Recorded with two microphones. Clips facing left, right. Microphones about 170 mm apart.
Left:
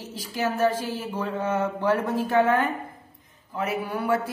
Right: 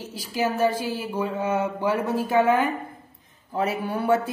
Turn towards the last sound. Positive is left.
turn(degrees=-25)  # may be behind; listen again after turning